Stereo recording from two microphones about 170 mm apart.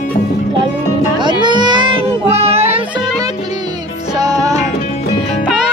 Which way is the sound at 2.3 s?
40° right (ahead or behind).